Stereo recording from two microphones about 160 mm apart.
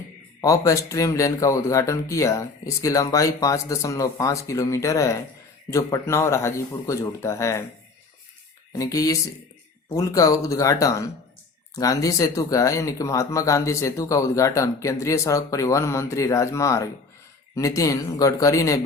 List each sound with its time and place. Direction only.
0.4 s speech: 20° left (ahead or behind)
8.7 s speech: 20° left (ahead or behind)